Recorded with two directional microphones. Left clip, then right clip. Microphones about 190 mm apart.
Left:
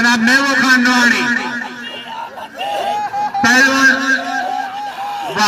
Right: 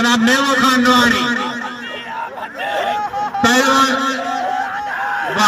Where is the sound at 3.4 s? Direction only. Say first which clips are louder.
Left 3 dB; 35° right (ahead or behind).